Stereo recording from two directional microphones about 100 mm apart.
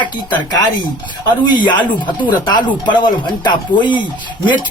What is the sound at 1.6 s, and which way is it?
Speech, 50° left (ahead or behind).